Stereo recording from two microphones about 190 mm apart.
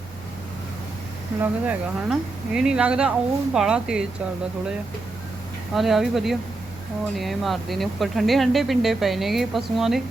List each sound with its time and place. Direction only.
1.4 s speech: 10° right (ahead or behind)
5.7 s speech: centre (ahead or behind)